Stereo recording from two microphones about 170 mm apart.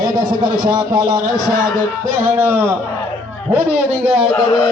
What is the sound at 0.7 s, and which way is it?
Speech, 25° right (ahead or behind).